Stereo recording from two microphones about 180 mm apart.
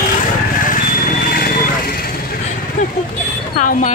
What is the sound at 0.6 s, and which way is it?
Vehicle, 50° left (ahead or behind).